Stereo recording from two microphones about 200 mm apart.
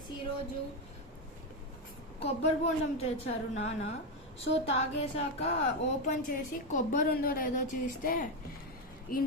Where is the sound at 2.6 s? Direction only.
35° left (ahead or behind).